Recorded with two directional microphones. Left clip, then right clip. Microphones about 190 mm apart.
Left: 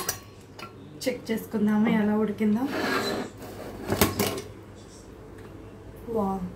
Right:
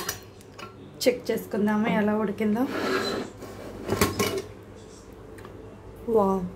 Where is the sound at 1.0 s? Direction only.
55° right (ahead or behind).